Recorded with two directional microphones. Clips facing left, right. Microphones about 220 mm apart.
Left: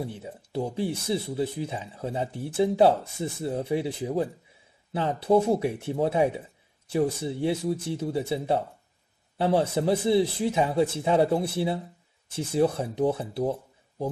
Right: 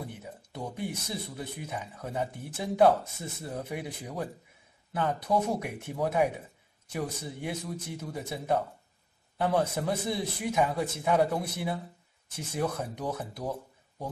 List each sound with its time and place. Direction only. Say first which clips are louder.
0.0 s speech: left 6 dB; 25° left (ahead or behind)